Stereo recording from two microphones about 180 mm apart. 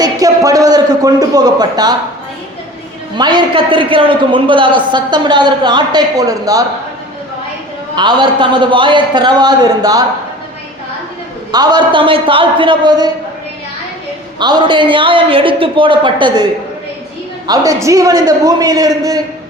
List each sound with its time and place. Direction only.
0.0 s a sound: 20° right (ahead or behind)
3.2 s a man's voice: 25° right (ahead or behind)
7.9 s a man's voice: 25° right (ahead or behind)
11.5 s a man's voice: 25° right (ahead or behind)
14.3 s a man's voice: 25° right (ahead or behind)